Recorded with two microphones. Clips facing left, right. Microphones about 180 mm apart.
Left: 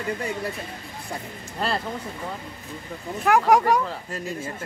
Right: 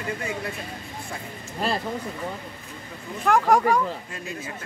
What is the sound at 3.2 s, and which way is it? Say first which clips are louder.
Speech: left 1 dB; 10° left (ahead or behind).